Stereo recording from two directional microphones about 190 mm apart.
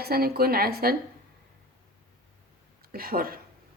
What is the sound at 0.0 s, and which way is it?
Speech, 55° right (ahead or behind).